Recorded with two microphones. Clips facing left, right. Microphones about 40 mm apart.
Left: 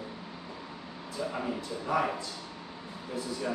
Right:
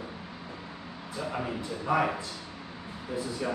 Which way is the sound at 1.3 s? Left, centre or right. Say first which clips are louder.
Right 1 dB; centre.